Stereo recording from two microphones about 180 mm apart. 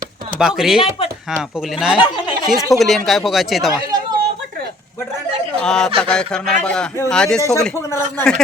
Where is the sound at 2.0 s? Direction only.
25° left (ahead or behind).